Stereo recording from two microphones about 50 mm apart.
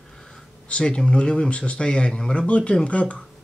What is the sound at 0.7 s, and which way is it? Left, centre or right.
Speech, left.